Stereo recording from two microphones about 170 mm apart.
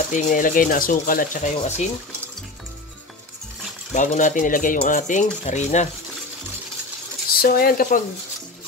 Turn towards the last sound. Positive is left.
turn(degrees=55)  # may be behind; listen again after turning